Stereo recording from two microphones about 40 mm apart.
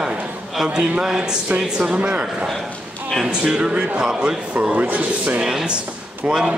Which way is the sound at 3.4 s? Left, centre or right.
Right.